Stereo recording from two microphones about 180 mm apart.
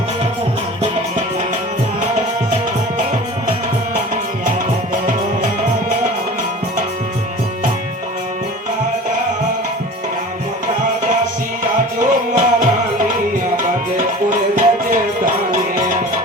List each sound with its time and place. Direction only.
11.9 s music: 50° right (ahead or behind)
13.9 s music: 50° right (ahead or behind)